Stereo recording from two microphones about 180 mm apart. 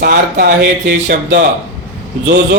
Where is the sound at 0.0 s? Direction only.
60° right (ahead or behind).